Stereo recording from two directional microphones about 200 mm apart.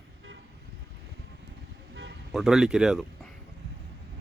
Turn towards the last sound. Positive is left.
turn(degrees=-5)  # may be behind; listen again after turning